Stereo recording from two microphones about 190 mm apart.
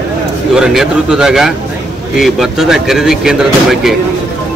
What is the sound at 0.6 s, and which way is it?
Speech, centre (ahead or behind).